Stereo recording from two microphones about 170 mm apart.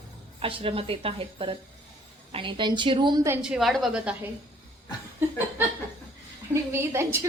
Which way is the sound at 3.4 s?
5° right (ahead or behind).